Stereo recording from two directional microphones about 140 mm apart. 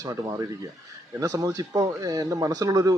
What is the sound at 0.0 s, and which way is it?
Speech, 25° right (ahead or behind).